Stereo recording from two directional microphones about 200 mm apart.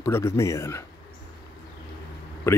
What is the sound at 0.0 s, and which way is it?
Speech, 15° left (ahead or behind).